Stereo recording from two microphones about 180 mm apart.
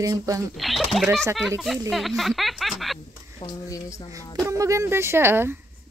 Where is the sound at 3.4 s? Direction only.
20° left (ahead or behind).